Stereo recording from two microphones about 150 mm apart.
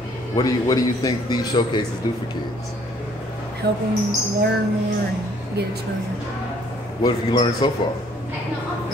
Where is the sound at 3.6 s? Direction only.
90° right.